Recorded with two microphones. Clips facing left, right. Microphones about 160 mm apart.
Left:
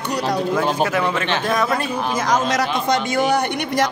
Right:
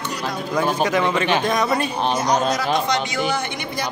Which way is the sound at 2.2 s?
90° left.